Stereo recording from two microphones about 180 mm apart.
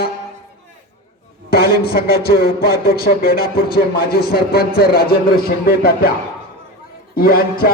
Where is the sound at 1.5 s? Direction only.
60° left (ahead or behind).